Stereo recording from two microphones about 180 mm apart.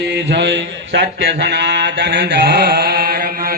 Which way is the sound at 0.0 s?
70° right (ahead or behind).